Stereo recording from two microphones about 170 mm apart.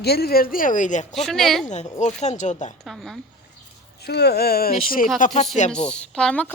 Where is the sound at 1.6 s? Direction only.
45° left (ahead or behind).